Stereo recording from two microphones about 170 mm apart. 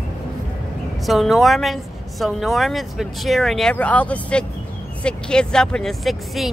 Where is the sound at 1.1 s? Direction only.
Centre (ahead or behind).